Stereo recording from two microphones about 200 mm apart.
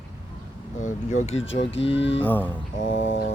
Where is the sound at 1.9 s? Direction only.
65° left (ahead or behind).